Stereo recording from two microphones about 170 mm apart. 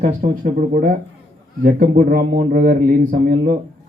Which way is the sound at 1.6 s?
60° right (ahead or behind).